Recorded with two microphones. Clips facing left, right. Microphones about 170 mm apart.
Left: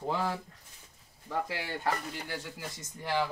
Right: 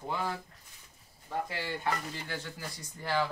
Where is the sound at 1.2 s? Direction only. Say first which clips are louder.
Left 1 dB; 85° left.